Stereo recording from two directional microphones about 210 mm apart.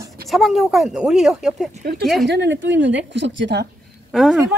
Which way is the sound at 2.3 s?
55° right (ahead or behind).